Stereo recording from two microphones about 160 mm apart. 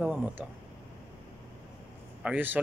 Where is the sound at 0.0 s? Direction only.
10° right (ahead or behind).